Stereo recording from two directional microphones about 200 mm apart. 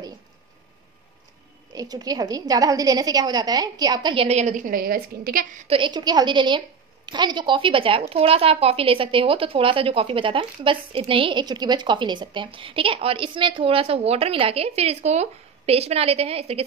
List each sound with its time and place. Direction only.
1.7 s speech: 20° right (ahead or behind); by 5.7 s 45° right (ahead or behind)
5.7 s speech: 25° right (ahead or behind)